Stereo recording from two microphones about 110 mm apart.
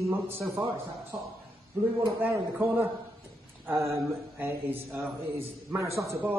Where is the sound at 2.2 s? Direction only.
20° right (ahead or behind).